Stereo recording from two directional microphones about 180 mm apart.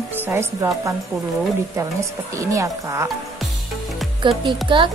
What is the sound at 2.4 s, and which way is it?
Speech, 15° right (ahead or behind).